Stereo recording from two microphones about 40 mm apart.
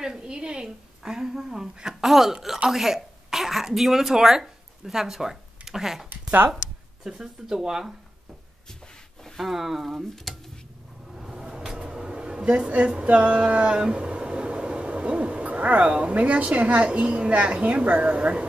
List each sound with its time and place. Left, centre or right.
0.0 s a woman's voice: centre
7.1 s a woman's voice: centre
9.4 s speech: centre
11.1 s a sound: centre; by 13.7 s right
13.7 s speech: right